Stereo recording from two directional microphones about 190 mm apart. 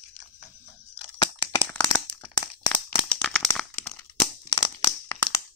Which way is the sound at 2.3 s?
25° left (ahead or behind).